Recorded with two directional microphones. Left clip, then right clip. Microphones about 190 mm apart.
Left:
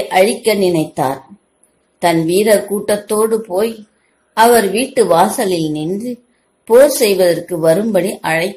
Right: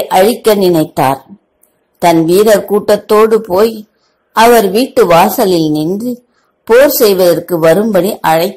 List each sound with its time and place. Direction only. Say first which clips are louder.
0.1 s speech: right 4 dB; 30° right (ahead or behind)